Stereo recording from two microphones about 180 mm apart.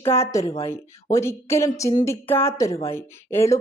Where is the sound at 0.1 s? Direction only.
15° left (ahead or behind).